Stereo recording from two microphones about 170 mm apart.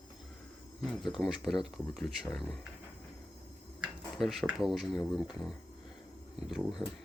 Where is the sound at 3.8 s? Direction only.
Centre (ahead or behind).